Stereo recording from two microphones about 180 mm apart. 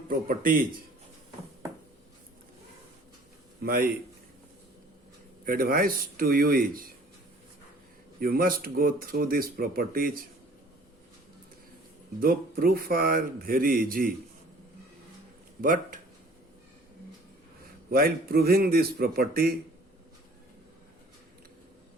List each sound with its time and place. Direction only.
0.1 s speech: 50° right (ahead or behind)
3.6 s speech: 55° right (ahead or behind)
5.5 s speech: 55° right (ahead or behind)
8.2 s speech: 55° right (ahead or behind)
12.2 s speech: 55° right (ahead or behind)
15.6 s speech: 50° right (ahead or behind)
17.9 s a man's voice: 55° right (ahead or behind)